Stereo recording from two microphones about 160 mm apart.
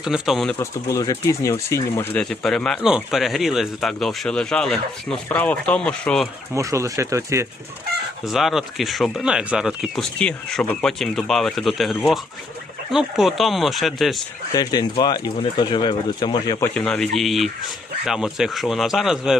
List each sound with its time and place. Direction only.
0.0 s speech: centre (ahead or behind)
0.6 s speech: 20° left (ahead or behind)
2.3 s speech: 5° left (ahead or behind)
6.5 s speech: 20° right (ahead or behind)
8.2 s speech: centre (ahead or behind)
14.5 s speech: 25° left (ahead or behind)
16.6 s speech: 10° left (ahead or behind)